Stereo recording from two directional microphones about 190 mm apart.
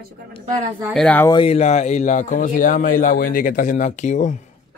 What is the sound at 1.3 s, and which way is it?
A man's voice, 30° left (ahead or behind).